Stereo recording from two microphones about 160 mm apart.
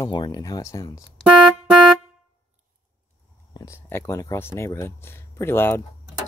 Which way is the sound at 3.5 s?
20° left (ahead or behind).